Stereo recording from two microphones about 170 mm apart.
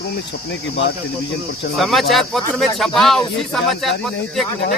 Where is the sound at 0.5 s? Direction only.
90° left.